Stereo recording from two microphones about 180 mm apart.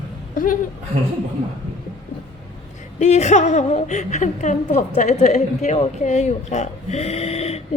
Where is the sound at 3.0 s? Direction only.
40° left (ahead or behind).